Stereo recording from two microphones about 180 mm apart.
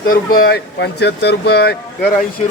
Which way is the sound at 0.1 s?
55° left (ahead or behind).